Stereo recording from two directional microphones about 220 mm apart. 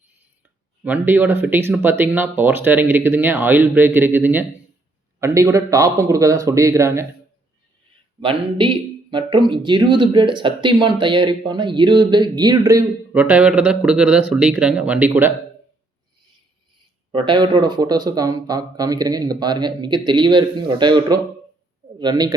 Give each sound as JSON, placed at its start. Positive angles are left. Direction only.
{"t": 0.9, "sound": "speech", "side_deg": -5}
{"t": 8.2, "sound": "speech", "side_deg": -25}
{"t": 17.1, "sound": "speech", "side_deg": -20}